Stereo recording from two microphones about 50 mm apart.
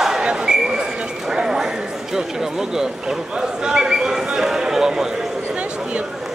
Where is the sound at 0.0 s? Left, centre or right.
Centre.